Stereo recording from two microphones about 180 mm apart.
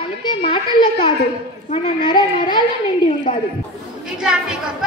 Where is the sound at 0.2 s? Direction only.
25° left (ahead or behind).